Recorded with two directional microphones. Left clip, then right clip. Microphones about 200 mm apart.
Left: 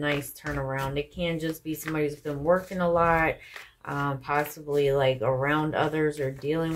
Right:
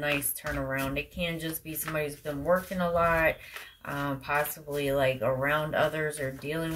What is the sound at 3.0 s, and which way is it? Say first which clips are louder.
Speech: even; 40° left (ahead or behind).